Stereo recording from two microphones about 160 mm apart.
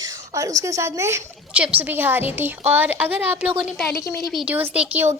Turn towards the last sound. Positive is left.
turn(degrees=-10)  # may be behind; listen again after turning